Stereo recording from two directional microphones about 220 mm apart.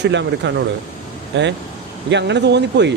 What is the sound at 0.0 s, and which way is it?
Speech, 55° right (ahead or behind).